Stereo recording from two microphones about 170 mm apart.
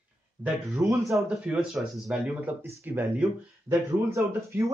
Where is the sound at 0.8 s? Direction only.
15° right (ahead or behind).